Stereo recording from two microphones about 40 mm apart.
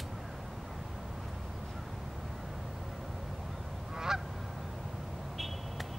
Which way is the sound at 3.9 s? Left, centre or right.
Centre.